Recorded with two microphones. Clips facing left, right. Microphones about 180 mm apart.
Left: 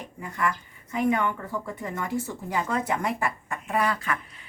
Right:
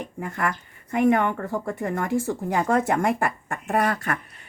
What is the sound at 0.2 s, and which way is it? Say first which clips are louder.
Speech: right 1 dB; 55° right (ahead or behind).